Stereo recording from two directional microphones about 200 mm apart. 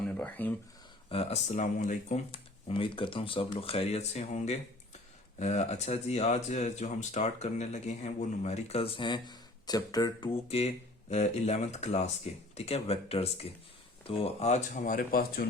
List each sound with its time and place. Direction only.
0.0 s a sound: 5° left (ahead or behind)
1.1 s speech: 30° left (ahead or behind)
2.3 s speech: 25° left (ahead or behind); by 15.4 s 50° left (ahead or behind)